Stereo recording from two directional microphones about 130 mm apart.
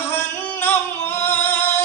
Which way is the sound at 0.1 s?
15° left (ahead or behind).